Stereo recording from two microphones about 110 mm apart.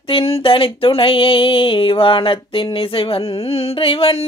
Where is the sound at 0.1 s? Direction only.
60° left (ahead or behind).